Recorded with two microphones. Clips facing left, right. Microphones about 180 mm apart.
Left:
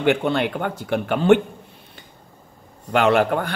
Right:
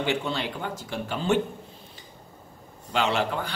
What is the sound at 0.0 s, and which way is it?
A man's voice, 60° left (ahead or behind).